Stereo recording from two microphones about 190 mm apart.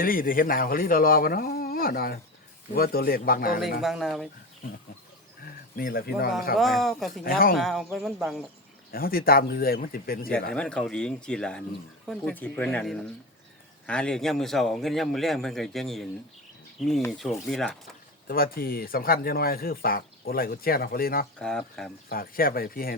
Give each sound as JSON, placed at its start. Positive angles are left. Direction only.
{"t": 0.0, "sound": "speech", "side_deg": 50}
{"t": 3.8, "sound": "a man's voice", "side_deg": 0}
{"t": 5.7, "sound": "speech", "side_deg": 50}
{"t": 6.6, "sound": "a man's voice", "side_deg": 0}
{"t": 7.3, "sound": "speech", "side_deg": 50}
{"t": 7.5, "sound": "a man's voice", "side_deg": 0}
{"t": 8.9, "sound": "speech", "side_deg": 50}
{"t": 10.5, "sound": "a man's voice", "side_deg": 5}
{"t": 17.1, "sound": "a man's voice", "side_deg": 0}
{"t": 18.3, "sound": "speech", "side_deg": 50}
{"t": 21.3, "sound": "a man's voice", "side_deg": 5}
{"t": 22.1, "sound": "speech", "side_deg": 50}